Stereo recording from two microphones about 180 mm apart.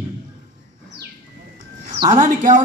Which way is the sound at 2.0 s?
45° right (ahead or behind).